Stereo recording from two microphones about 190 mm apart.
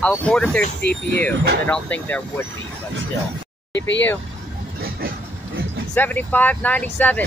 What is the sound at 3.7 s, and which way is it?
Speech, 70° left (ahead or behind).